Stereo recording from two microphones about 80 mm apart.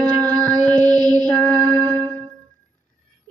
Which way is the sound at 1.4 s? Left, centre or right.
Left.